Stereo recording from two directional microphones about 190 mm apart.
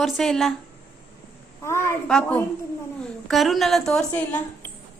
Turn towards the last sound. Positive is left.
turn(degrees=10)  # may be behind; listen again after turning